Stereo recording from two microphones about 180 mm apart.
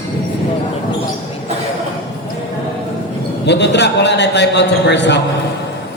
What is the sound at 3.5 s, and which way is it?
A man's voice, 70° left (ahead or behind).